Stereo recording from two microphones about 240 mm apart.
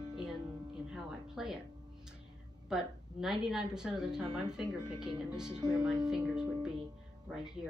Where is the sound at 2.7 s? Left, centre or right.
Centre.